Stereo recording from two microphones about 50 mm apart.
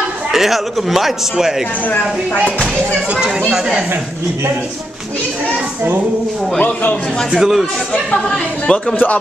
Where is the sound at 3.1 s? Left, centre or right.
Centre.